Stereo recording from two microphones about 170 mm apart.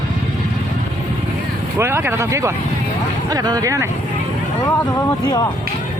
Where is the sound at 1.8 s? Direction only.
15° right (ahead or behind).